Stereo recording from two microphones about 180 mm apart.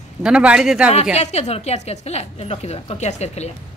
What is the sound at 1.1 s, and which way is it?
A woman's voice, 40° left (ahead or behind).